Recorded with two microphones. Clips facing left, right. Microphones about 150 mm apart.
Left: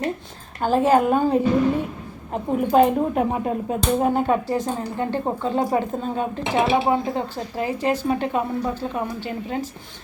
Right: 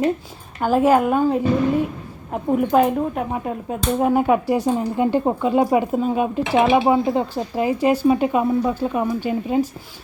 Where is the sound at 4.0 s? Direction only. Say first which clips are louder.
Right 7 dB; 10° right (ahead or behind).